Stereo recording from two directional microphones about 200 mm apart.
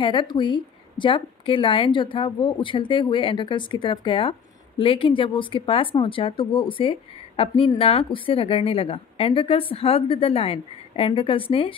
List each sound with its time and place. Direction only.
0.0 s a woman's voice: 25° left (ahead or behind)